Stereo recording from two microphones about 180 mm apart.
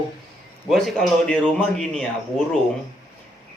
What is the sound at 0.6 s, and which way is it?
Speech, centre (ahead or behind).